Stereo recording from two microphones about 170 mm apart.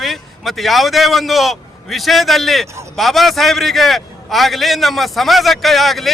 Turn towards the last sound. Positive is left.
turn(degrees=0)  # may be behind; listen again after turning